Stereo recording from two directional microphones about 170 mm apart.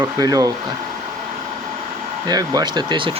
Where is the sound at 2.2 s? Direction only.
25° right (ahead or behind).